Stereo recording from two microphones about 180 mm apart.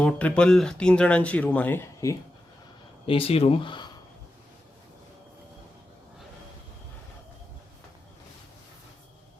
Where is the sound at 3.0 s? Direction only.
30° left (ahead or behind).